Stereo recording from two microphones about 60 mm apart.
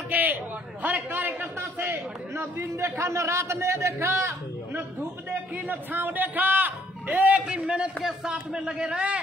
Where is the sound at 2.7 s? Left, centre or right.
Right.